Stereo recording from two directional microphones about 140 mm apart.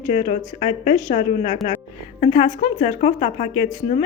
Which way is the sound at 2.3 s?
35° left (ahead or behind).